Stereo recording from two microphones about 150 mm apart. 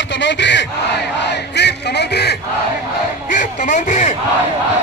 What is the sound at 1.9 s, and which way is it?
Speech, 90° left.